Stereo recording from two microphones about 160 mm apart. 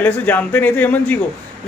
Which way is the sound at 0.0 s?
10° left (ahead or behind).